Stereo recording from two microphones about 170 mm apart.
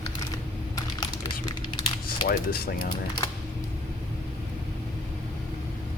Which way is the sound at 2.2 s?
60° left (ahead or behind).